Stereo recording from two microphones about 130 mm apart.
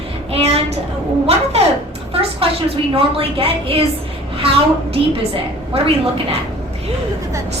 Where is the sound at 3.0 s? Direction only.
45° right (ahead or behind).